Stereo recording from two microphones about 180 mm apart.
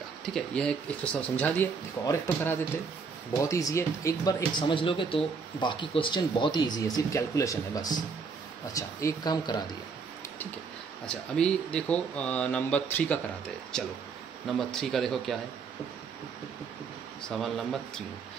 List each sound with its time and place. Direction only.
0.2 s speech: 5° left (ahead or behind); by 9.6 s 20° left (ahead or behind)
11.1 s speech: 5° left (ahead or behind)
17.2 s speech: centre (ahead or behind)